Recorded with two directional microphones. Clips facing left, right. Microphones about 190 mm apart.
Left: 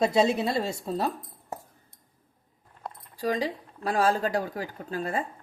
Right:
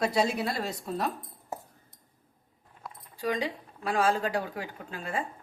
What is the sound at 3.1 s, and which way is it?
Speech, 35° left (ahead or behind).